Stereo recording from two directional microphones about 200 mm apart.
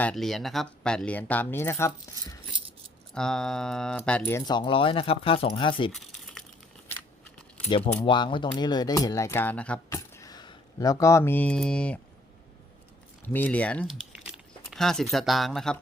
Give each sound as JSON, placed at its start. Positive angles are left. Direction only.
{"t": 0.0, "sound": "speech", "side_deg": 5}
{"t": 5.9, "sound": "crumpling", "side_deg": 0}
{"t": 7.7, "sound": "speech", "side_deg": 30}
{"t": 13.2, "sound": "speech", "side_deg": 10}